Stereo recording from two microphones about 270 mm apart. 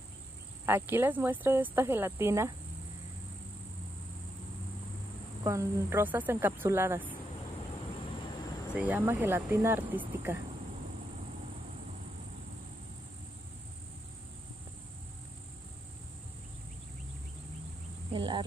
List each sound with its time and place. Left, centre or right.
0.7 s speech: centre
5.4 s speech: centre
8.7 s speech: centre
18.1 s speech: centre